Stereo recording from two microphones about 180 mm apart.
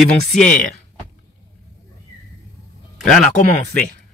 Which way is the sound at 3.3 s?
45° left (ahead or behind).